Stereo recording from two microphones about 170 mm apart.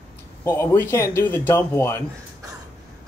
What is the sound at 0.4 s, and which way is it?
A man's voice, 15° left (ahead or behind).